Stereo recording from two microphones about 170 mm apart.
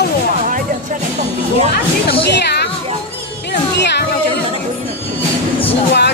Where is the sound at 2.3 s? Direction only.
80° left.